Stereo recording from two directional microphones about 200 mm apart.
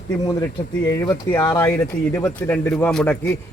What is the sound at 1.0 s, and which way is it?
Speech, 15° left (ahead or behind).